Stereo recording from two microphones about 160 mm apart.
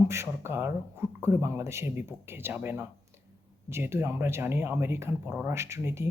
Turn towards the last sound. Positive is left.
turn(degrees=-15)  # may be behind; listen again after turning